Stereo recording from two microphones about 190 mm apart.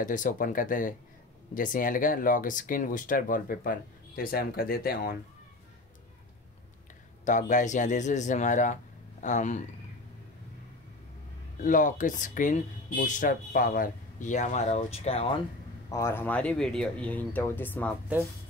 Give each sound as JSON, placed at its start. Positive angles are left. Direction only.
{"t": 0.0, "sound": "speech", "side_deg": 45}
{"t": 7.2, "sound": "speech", "side_deg": 40}
{"t": 11.6, "sound": "speech", "side_deg": 45}
{"t": 15.9, "sound": "speech", "side_deg": 15}